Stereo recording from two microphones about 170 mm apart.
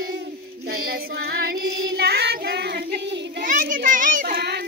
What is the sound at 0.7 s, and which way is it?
Child singing, 60° right (ahead or behind).